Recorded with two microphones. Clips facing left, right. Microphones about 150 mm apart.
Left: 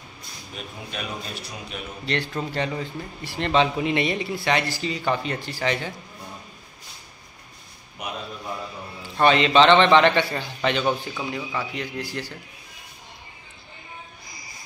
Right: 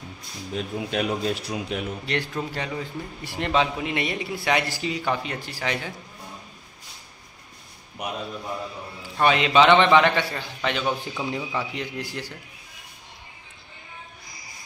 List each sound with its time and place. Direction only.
0.6 s a man's voice: 90° right
2.0 s a man's voice: 10° right (ahead or behind)
9.1 s a man's voice: 5° right (ahead or behind)
11.3 s a man's voice: 20° right (ahead or behind)